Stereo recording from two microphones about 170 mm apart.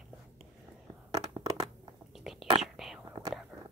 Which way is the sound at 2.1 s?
Centre (ahead or behind).